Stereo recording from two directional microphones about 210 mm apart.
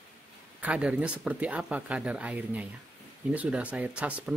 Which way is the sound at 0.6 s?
5° right (ahead or behind).